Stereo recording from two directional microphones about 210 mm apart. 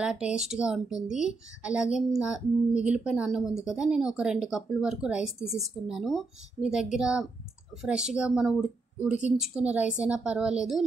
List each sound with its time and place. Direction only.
0.0 s speech: 5° right (ahead or behind)